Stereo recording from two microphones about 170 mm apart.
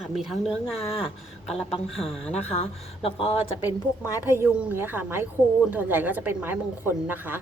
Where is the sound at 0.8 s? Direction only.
35° left (ahead or behind).